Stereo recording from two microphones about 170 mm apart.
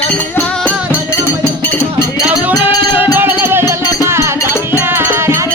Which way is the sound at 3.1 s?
10° right (ahead or behind).